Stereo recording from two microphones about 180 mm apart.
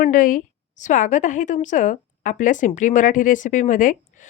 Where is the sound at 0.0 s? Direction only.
50° left (ahead or behind).